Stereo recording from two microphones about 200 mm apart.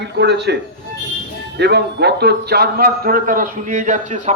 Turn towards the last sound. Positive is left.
turn(degrees=-40)  # may be behind; listen again after turning